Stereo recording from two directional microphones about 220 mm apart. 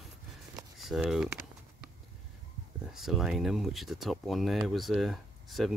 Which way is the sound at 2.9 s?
Centre (ahead or behind).